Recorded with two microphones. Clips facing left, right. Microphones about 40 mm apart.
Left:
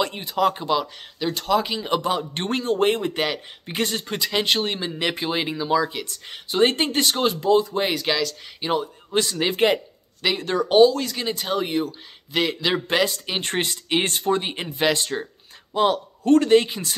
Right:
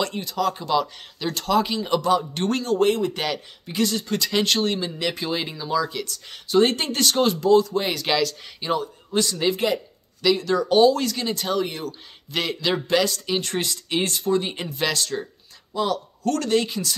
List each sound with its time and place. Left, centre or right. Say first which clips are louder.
0.0 s speech: left 3 dB; left
0.7 s a man's voice: right 1 dB; centre
1.9 s speech: right 2 dB; left
4.1 s speech: even; centre
8.0 s speech: right 1 dB; centre
8.5 s speech: left 1 dB; left
10.2 s speech: right 2 dB; left
10.8 s speech: left 2 dB; centre
11.1 s a man's voice: right 1 dB; centre
12.9 s speech: right 1 dB; left
14.5 s speech: left 3 dB; left
16.3 s speech: left 6 dB; left